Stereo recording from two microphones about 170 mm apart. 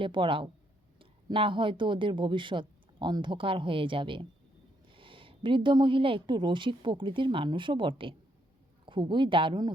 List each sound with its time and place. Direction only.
0.0 s a woman's voice: 30° right (ahead or behind)